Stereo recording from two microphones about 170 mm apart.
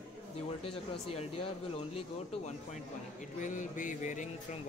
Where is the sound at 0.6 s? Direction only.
35° left (ahead or behind).